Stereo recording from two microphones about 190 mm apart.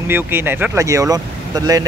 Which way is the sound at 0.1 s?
10° right (ahead or behind).